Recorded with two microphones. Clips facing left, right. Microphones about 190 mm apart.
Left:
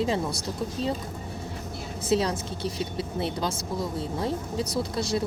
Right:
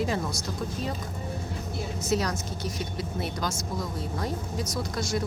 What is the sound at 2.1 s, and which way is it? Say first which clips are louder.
Speech: left 4 dB; 30° left (ahead or behind).